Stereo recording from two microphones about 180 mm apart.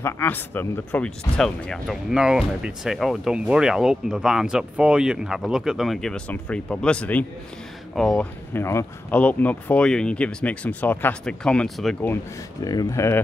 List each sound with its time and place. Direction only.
0.0 s speech: 10° left (ahead or behind)
12.6 s speech: 20° left (ahead or behind)